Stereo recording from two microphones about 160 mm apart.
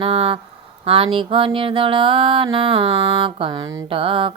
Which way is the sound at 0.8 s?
35° right (ahead or behind).